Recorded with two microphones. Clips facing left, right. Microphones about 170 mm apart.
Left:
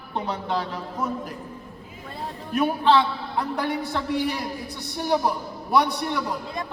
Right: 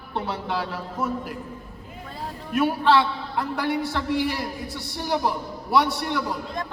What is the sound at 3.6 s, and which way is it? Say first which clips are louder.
Speech: right 1 dB; 15° left (ahead or behind).